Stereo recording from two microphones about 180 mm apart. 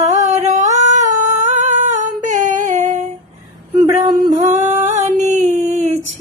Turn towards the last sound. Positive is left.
turn(degrees=-40)  # may be behind; listen again after turning